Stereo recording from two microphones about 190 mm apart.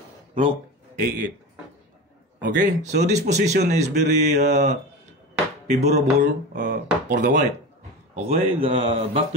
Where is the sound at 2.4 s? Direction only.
40° right (ahead or behind).